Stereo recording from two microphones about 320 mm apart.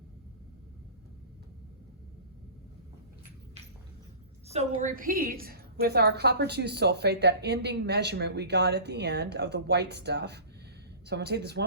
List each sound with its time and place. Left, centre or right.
4.4 s a woman's voice: centre